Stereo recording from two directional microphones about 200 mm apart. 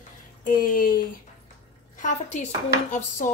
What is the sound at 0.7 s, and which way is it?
A woman's voice, 45° left (ahead or behind).